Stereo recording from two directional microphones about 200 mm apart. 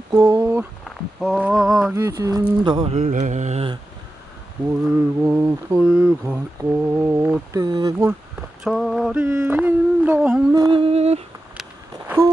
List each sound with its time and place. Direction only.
0.1 s speech: 10° right (ahead or behind)
2.0 s speech: 15° right (ahead or behind)
3.0 s mantra: 40° right (ahead or behind)
4.8 s speech: 5° right (ahead or behind)
8.1 s speech: 5° right (ahead or behind)
10.5 s a sound: 20° right (ahead or behind)